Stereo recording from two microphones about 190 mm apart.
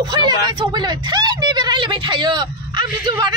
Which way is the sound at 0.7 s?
20° right (ahead or behind).